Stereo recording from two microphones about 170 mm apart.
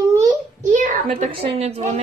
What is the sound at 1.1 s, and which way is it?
Speech, 35° right (ahead or behind).